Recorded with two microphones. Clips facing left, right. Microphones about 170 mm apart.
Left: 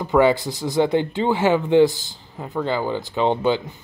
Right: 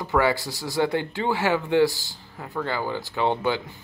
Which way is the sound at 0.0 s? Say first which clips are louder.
Left 6 dB; 20° left (ahead or behind).